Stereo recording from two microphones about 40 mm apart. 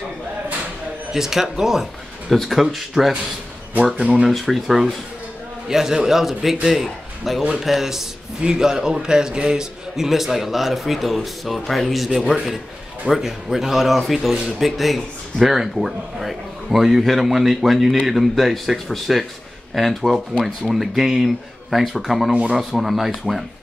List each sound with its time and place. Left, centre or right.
1.1 s a man's voice: centre
2.2 s speech: centre
4.0 s speech: right
4.3 s a man's voice: centre